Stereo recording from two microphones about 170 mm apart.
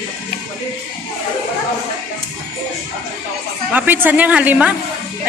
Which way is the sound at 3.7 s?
10° right (ahead or behind).